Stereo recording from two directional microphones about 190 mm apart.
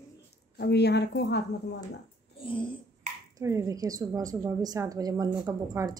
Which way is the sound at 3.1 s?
45° right (ahead or behind).